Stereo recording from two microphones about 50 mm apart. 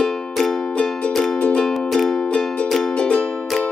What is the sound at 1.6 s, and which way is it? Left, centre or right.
Music, centre.